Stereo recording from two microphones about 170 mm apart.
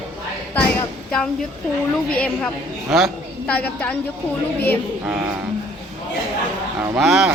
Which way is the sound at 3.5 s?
10° left (ahead or behind).